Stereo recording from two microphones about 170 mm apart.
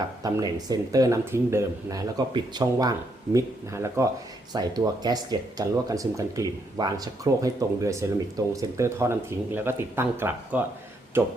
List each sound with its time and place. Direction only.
0.2 s speech: 20° right (ahead or behind)